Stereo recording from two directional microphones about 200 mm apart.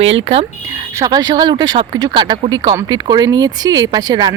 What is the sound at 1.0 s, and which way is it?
A woman's voice, 20° right (ahead or behind).